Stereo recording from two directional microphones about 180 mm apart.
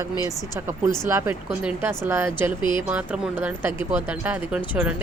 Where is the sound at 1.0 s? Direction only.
15° right (ahead or behind).